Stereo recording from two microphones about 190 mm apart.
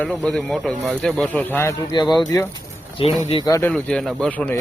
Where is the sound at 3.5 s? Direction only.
10° left (ahead or behind).